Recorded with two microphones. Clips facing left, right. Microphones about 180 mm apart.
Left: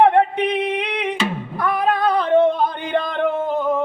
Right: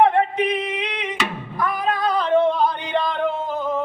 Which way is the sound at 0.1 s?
60° left (ahead or behind).